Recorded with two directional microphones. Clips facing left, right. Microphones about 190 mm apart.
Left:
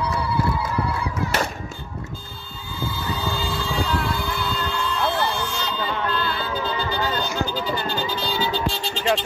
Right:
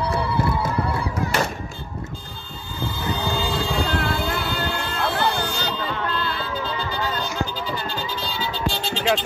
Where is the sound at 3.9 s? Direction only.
60° right (ahead or behind).